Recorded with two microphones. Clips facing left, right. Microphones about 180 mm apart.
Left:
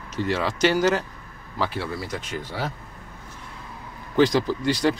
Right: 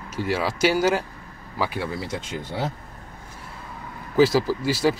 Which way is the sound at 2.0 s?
25° right (ahead or behind).